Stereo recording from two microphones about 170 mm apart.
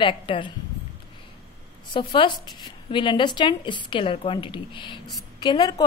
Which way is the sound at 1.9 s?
30° left (ahead or behind).